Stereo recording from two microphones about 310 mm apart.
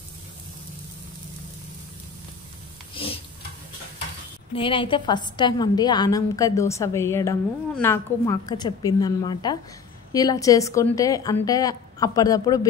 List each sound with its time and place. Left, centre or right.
2.9 s stir: centre
4.6 s a woman's voice: centre